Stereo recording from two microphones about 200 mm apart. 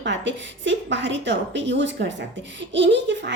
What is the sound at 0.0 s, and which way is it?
Speech, 65° right (ahead or behind).